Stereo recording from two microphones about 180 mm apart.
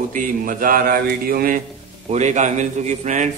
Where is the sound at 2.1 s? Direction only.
40° right (ahead or behind).